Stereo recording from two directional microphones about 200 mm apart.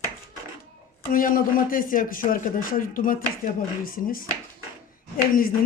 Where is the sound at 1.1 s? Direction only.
45° left (ahead or behind).